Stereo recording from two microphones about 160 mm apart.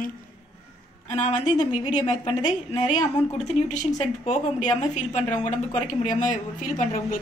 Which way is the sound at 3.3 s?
50° left (ahead or behind).